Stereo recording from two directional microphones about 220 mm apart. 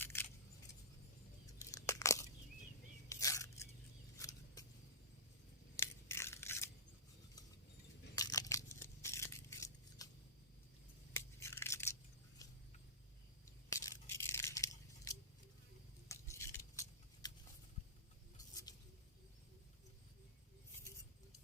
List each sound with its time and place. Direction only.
0.0 s keys jangling: 10° left (ahead or behind)
1.9 s a sound: 15° left (ahead or behind)
4.2 s vehicle: 15° left (ahead or behind)
5.7 s scissors: 10° left (ahead or behind)
8.1 s a sound: 15° left (ahead or behind)
11.1 s tearing: 10° left (ahead or behind)
12.4 s vehicle: 15° left (ahead or behind)
13.7 s scissors: 15° left (ahead or behind)
16.0 s a sound: 10° left (ahead or behind)
18.3 s patter: 15° left (ahead or behind)